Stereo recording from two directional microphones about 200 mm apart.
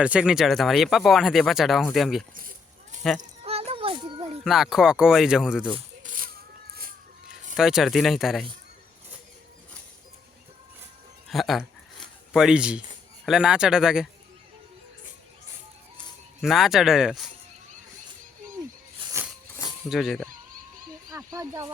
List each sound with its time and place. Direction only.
0.0 s speech: 5° right (ahead or behind)
3.2 s a sound: 30° right (ahead or behind)
4.4 s speech: centre (ahead or behind)
6.0 s a sound: 40° right (ahead or behind)
6.7 s cat: 45° right (ahead or behind)
7.5 s speech: centre (ahead or behind)
11.3 s a sound: centre (ahead or behind)
13.2 s speech: 5° right (ahead or behind)
16.4 s speech: centre (ahead or behind)
19.0 s a sound: 25° right (ahead or behind)
19.9 s speech: centre (ahead or behind)
21.1 s speech: 15° right (ahead or behind)